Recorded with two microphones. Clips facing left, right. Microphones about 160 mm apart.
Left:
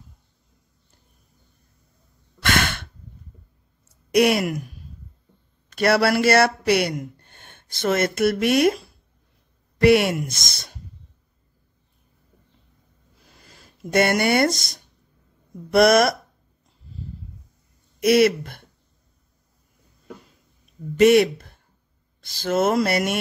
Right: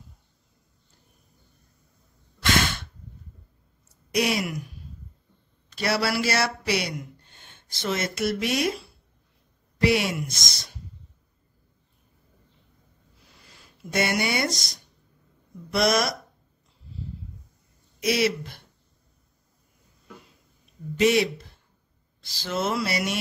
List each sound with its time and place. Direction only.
2.4 s breathing: 60° left (ahead or behind)
4.1 s speech: 60° left (ahead or behind)
5.7 s speech: 55° left (ahead or behind)
13.5 s speech: 55° left (ahead or behind)
18.0 s speech: 55° left (ahead or behind)
21.0 s speech: 55° left (ahead or behind)